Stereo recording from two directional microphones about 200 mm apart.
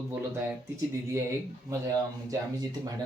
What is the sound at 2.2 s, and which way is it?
Speech, 20° right (ahead or behind).